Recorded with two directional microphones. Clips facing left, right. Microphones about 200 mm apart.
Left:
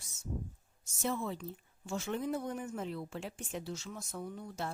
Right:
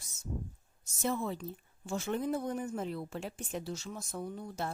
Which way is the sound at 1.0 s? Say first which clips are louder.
Right 2 dB; 40° right (ahead or behind).